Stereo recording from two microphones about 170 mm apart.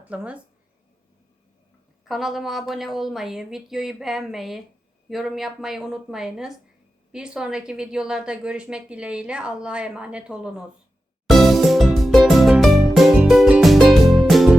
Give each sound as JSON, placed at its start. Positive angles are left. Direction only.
{"t": 0.0, "sound": "speech", "side_deg": -5}
{"t": 2.0, "sound": "a woman's voice", "side_deg": 0}
{"t": 11.3, "sound": "music", "side_deg": 0}